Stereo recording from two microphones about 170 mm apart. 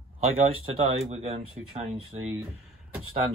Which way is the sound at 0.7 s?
40° right (ahead or behind).